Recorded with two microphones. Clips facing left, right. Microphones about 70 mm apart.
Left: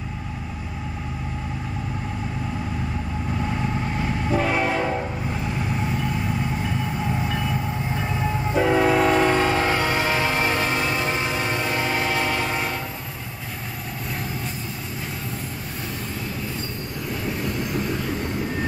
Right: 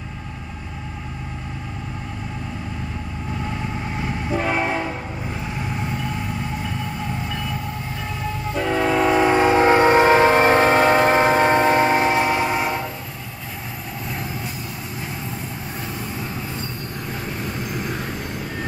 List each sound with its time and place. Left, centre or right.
4.0 s train: centre
6.6 s train: centre
9.3 s train: centre